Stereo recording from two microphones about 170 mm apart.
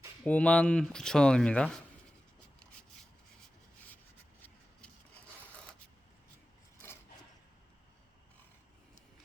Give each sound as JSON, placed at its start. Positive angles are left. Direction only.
{"t": 0.3, "sound": "speech", "side_deg": 5}